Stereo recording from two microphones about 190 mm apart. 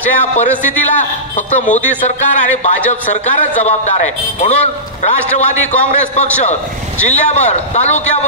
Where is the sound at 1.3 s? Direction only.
40° left (ahead or behind).